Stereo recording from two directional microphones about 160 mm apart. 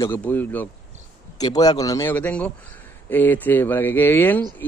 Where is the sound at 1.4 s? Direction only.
25° left (ahead or behind).